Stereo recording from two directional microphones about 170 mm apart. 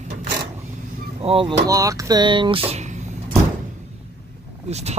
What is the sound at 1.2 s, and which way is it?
Speech, 30° right (ahead or behind).